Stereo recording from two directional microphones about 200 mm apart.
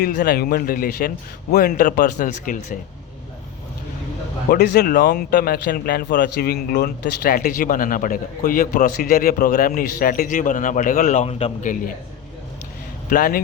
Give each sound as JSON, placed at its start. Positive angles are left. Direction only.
{"t": 0.0, "sound": "speech", "side_deg": 50}
{"t": 4.5, "sound": "speech", "side_deg": 50}
{"t": 13.1, "sound": "speech", "side_deg": 45}